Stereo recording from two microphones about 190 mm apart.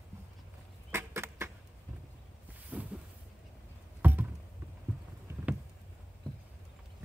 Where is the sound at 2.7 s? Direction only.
10° right (ahead or behind).